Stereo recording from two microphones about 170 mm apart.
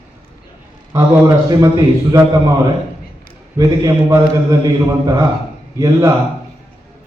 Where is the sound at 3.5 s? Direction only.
20° right (ahead or behind).